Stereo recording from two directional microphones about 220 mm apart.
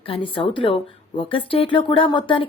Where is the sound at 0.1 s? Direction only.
25° left (ahead or behind).